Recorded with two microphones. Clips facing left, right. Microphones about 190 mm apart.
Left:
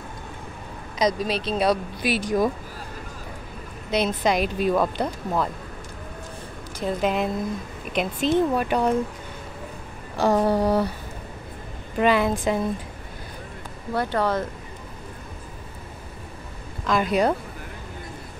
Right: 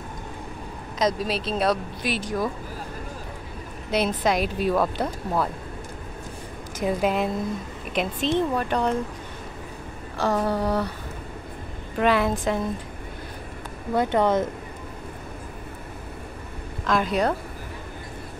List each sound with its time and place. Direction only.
0.9 s speech: centre (ahead or behind); by 2.5 s 15° left (ahead or behind)
3.9 s speech: 5° right (ahead or behind)
6.8 s speech: 10° right (ahead or behind); by 8.9 s 10° left (ahead or behind)
10.1 s speech: 15° left (ahead or behind)
12.0 s speech: centre (ahead or behind)
13.9 s speech: 20° right (ahead or behind)
16.8 s a woman's voice: centre (ahead or behind)